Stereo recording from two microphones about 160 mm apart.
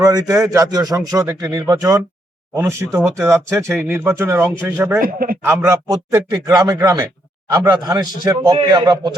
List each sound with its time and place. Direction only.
0.0 s speech: 20° right (ahead or behind)
4.9 s speech: 65° right (ahead or behind)
5.4 s speech: 15° right (ahead or behind)